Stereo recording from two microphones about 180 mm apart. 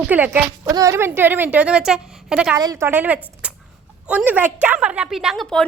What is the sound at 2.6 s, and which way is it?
A woman's voice, 15° right (ahead or behind).